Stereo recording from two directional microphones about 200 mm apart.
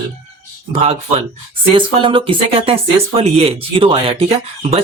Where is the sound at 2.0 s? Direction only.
25° right (ahead or behind).